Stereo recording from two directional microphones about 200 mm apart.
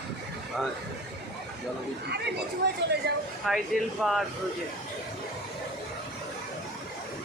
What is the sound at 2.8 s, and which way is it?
Speech, 60° right (ahead or behind).